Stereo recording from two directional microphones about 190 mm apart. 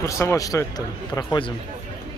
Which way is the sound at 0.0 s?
15° left (ahead or behind).